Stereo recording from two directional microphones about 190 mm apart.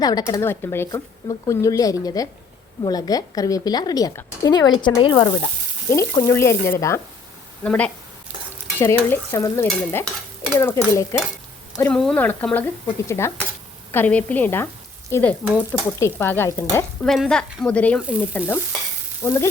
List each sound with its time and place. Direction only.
0.0 s a woman's voice: 20° left (ahead or behind)
17.0 s speech: 5° left (ahead or behind)
18.0 s sizzle: 5° right (ahead or behind)
18.3 s speech: 10° left (ahead or behind)